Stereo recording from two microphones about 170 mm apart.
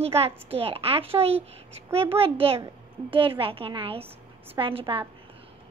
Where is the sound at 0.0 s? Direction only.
35° right (ahead or behind).